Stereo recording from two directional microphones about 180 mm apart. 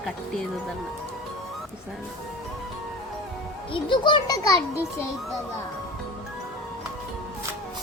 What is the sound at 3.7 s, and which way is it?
Speech, 30° left (ahead or behind).